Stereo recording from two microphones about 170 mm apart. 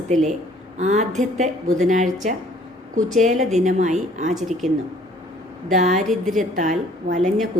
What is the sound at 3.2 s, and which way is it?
A woman's voice, 45° right (ahead or behind).